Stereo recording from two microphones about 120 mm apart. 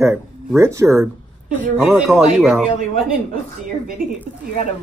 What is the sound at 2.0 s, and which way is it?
Speech, centre (ahead or behind).